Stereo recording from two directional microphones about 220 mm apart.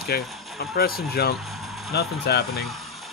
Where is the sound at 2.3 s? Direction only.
45° left (ahead or behind).